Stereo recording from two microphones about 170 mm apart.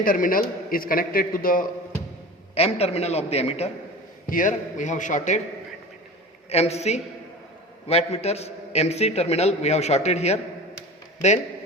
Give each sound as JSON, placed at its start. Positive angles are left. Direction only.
{"t": 0.0, "sound": "a man's voice", "side_deg": 55}
{"t": 2.6, "sound": "a man's voice", "side_deg": 40}
{"t": 4.3, "sound": "a man's voice", "side_deg": 50}
{"t": 6.5, "sound": "a man's voice", "side_deg": 40}